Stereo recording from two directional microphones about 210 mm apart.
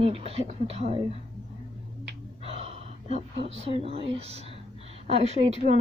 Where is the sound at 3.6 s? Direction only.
30° right (ahead or behind).